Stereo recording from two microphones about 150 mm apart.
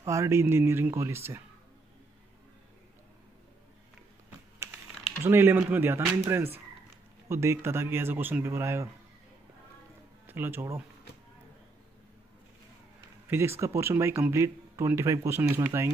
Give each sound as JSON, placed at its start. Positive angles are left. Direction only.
{"t": 0.0, "sound": "speech", "side_deg": -20}
{"t": 5.2, "sound": "speech", "side_deg": -15}
{"t": 10.2, "sound": "speech", "side_deg": -15}
{"t": 13.3, "sound": "speech", "side_deg": -15}